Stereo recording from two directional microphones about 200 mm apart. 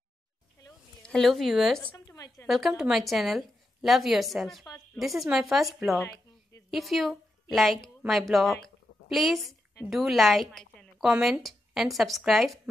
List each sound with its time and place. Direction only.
1.0 s a woman's voice: centre (ahead or behind)
2.0 s a sound: 15° left (ahead or behind)
2.4 s a woman's voice: centre (ahead or behind)